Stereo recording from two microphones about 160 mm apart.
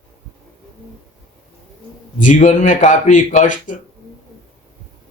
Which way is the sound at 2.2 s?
50° left (ahead or behind).